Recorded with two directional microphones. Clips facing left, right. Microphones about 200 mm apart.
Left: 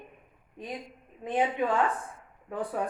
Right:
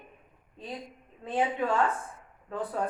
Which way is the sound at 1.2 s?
15° left (ahead or behind).